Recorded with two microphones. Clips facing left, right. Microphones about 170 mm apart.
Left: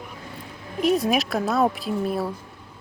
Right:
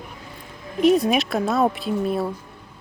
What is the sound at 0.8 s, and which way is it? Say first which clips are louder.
A woman's voice: right 4 dB; centre (ahead or behind).